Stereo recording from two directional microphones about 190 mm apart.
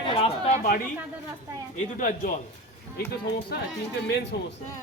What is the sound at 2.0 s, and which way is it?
Speech, 45° left (ahead or behind).